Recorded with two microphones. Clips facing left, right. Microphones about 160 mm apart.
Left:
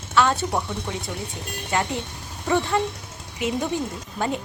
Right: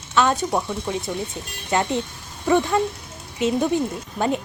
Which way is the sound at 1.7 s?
20° right (ahead or behind).